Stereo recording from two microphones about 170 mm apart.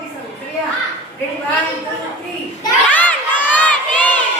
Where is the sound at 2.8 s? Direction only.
10° left (ahead or behind).